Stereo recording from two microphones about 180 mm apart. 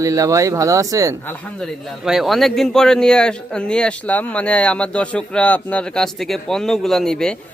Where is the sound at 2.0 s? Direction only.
Centre (ahead or behind).